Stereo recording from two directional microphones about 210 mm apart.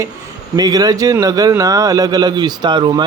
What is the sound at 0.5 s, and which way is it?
A man's voice, 20° right (ahead or behind).